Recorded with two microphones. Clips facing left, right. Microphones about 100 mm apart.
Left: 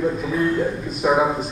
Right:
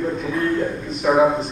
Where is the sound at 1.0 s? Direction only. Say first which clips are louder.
Right 1 dB; 10° left (ahead or behind).